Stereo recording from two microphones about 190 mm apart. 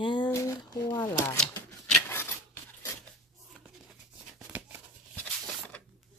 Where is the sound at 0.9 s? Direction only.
20° left (ahead or behind).